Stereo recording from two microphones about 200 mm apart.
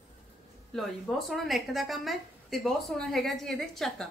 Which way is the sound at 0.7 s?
Centre (ahead or behind).